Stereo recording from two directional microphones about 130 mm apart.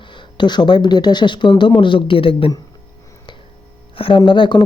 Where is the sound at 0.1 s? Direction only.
35° left (ahead or behind).